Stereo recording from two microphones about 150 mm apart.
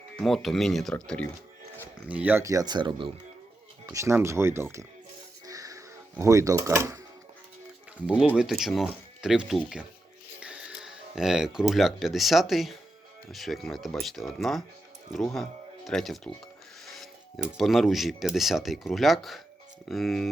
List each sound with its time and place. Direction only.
0.2 s speech: centre (ahead or behind)
2.0 s speech: 10° right (ahead or behind); by 3.1 s 30° right (ahead or behind)
3.8 s speech: 20° right (ahead or behind)
5.5 s a sound: 25° right (ahead or behind)
8.4 s speech: centre (ahead or behind)